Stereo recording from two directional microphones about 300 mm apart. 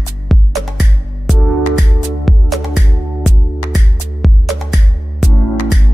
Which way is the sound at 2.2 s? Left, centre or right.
Centre.